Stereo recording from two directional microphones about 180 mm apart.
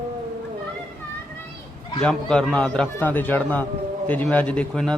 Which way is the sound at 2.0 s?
5° left (ahead or behind).